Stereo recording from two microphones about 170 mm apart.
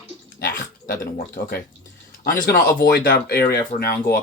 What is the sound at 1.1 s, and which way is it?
Speech, 65° left (ahead or behind).